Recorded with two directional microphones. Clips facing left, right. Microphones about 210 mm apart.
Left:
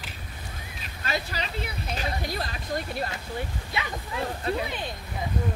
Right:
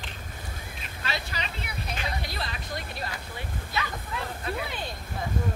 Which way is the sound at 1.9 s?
40° left (ahead or behind).